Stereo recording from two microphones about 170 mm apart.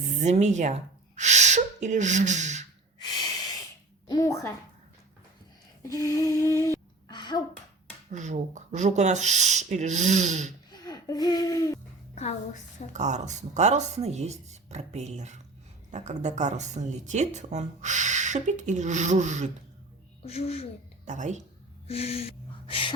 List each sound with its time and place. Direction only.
0.0 s speech: 40° right (ahead or behind)
4.1 s a woman's voice: 20° left (ahead or behind)
6.1 s a sound: 20° left (ahead or behind)
8.1 s speech: 45° right (ahead or behind)
10.7 s a sound: 25° left (ahead or behind)
12.9 s speech: 45° right (ahead or behind)
20.2 s speech: 40° left (ahead or behind)
21.0 s speech: 45° right (ahead or behind)
21.8 s speech: 35° left (ahead or behind)